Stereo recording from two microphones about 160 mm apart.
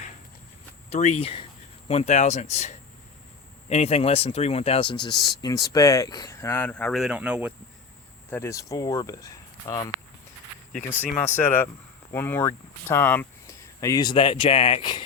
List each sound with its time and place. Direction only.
0.9 s speech: 45° left (ahead or behind); by 7.5 s 5° right (ahead or behind)
8.3 s speech: 15° left (ahead or behind)
10.7 s speech: 10° left (ahead or behind)
13.7 s speech: 25° left (ahead or behind)